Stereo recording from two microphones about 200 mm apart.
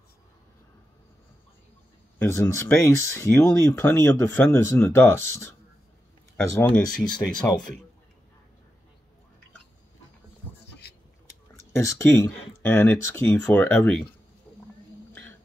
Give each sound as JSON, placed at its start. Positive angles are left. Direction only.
{"t": 2.1, "sound": "speech", "side_deg": 10}
{"t": 6.3, "sound": "speech", "side_deg": 5}
{"t": 10.7, "sound": "a sound", "side_deg": 55}
{"t": 11.7, "sound": "speech", "side_deg": 15}